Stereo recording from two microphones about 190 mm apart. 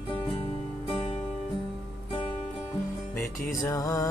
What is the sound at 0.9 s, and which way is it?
Music, 25° left (ahead or behind).